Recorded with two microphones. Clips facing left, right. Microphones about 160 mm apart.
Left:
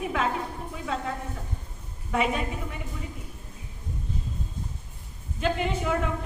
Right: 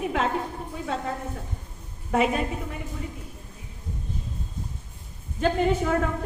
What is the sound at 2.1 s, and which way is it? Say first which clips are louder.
Speech: right 3 dB; 40° right (ahead or behind).